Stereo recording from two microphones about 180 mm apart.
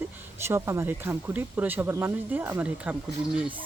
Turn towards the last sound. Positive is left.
turn(degrees=-5)  # may be behind; listen again after turning